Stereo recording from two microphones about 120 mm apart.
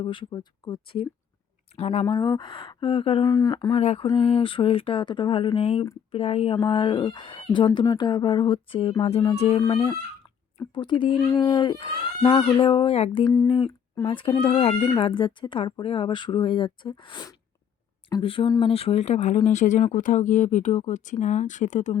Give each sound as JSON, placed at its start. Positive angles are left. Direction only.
{"t": 0.0, "sound": "speech", "side_deg": 45}
{"t": 1.7, "sound": "speech", "side_deg": 60}
{"t": 2.0, "sound": "speech", "side_deg": 35}
{"t": 3.2, "sound": "speech", "side_deg": 35}
{"t": 3.8, "sound": "speech", "side_deg": 65}
{"t": 4.2, "sound": "speech", "side_deg": 50}
{"t": 19.5, "sound": "speech", "side_deg": 85}